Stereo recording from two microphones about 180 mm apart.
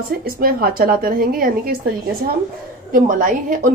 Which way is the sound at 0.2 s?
55° right (ahead or behind).